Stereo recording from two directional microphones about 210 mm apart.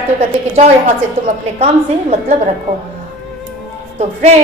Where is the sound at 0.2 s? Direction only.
30° right (ahead or behind).